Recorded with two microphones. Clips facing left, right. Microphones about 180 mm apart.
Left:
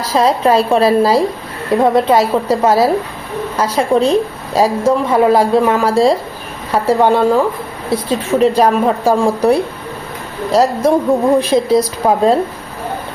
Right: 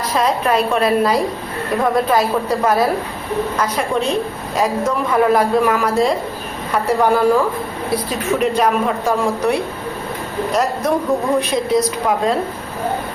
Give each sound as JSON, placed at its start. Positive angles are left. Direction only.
{"t": 0.1, "sound": "a woman's voice", "side_deg": 30}